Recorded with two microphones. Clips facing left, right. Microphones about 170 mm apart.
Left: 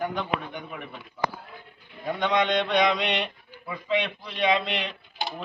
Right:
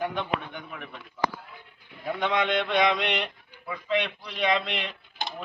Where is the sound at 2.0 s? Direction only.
5° right (ahead or behind).